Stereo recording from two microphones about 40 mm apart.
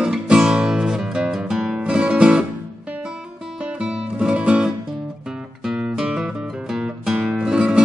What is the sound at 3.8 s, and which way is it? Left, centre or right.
Music, right.